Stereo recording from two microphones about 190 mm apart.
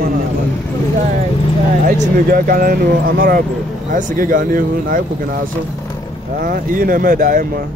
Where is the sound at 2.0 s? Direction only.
50° right (ahead or behind).